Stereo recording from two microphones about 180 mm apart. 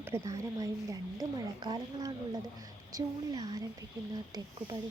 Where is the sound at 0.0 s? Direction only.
15° right (ahead or behind).